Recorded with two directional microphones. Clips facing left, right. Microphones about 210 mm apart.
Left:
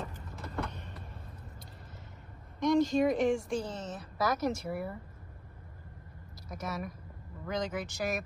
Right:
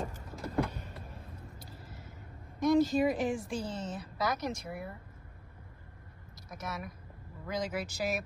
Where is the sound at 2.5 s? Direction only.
5° right (ahead or behind).